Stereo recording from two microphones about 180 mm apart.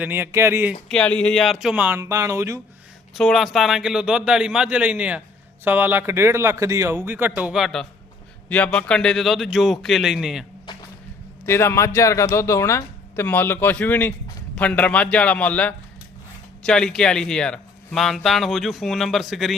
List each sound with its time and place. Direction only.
0.0 s a man's voice: 10° right (ahead or behind)
0.9 s speech: 5° left (ahead or behind); by 2.6 s 15° right (ahead or behind)
3.2 s a man's voice: centre (ahead or behind)
10.7 s a sound: 25° left (ahead or behind)
11.4 s speech: 15° left (ahead or behind)